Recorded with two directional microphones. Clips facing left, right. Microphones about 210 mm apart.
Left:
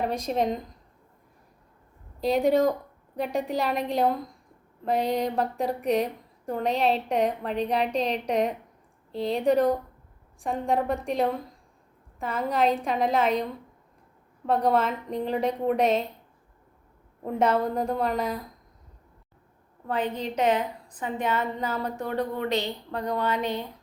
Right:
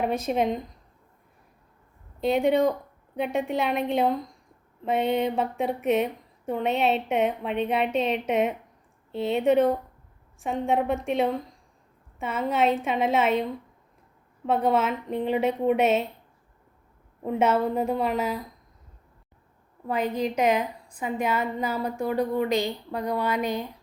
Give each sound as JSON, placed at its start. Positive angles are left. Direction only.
{"t": 0.0, "sound": "a woman's voice", "side_deg": -5}
{"t": 2.2, "sound": "a woman's voice", "side_deg": 0}
{"t": 14.4, "sound": "a woman's voice", "side_deg": -5}
{"t": 17.2, "sound": "a woman's voice", "side_deg": -5}
{"t": 19.9, "sound": "a woman's voice", "side_deg": -10}